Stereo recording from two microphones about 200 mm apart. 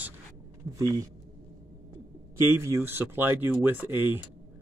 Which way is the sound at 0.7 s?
15° right (ahead or behind).